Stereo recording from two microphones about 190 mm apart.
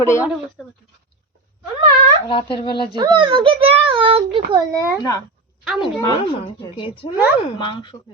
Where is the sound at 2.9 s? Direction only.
25° right (ahead or behind).